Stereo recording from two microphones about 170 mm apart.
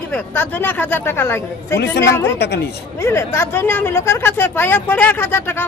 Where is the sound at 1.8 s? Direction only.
90° left.